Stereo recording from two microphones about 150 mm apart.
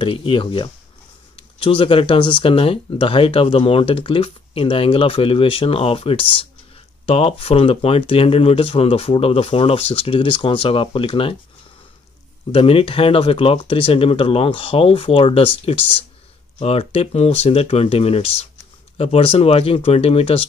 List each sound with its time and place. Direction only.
0.0 s speech: 35° left (ahead or behind)
12.5 s speech: 40° left (ahead or behind)